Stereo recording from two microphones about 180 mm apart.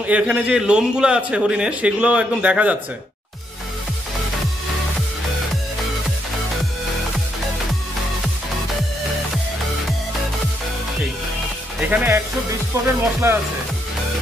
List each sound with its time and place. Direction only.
0.1 s a man's voice: 5° right (ahead or behind)
11.9 s speech: 10° right (ahead or behind)